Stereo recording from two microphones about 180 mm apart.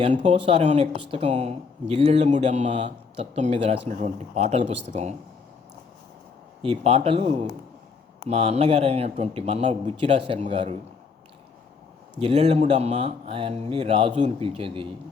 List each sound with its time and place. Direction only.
0.0 s speech: 35° right (ahead or behind)
6.6 s speech: 35° right (ahead or behind)
12.2 s speech: 35° right (ahead or behind)